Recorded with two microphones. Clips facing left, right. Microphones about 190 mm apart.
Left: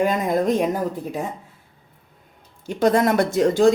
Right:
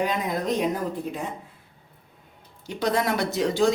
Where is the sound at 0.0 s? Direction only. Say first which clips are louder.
Left 6 dB; 45° left (ahead or behind).